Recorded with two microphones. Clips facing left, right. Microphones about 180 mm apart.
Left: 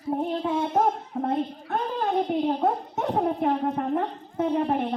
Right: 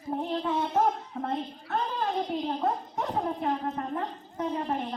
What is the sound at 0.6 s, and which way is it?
A woman's voice, 50° left (ahead or behind).